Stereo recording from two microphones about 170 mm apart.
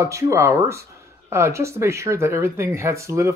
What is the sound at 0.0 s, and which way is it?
Speech, 20° right (ahead or behind).